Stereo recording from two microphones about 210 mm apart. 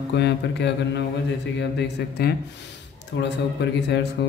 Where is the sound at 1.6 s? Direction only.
55° left (ahead or behind).